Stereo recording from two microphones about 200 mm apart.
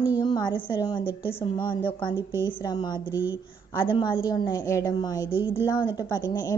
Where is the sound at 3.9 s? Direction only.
25° left (ahead or behind).